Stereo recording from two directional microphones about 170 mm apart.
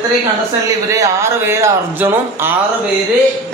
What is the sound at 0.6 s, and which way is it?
A man's voice, 20° right (ahead or behind).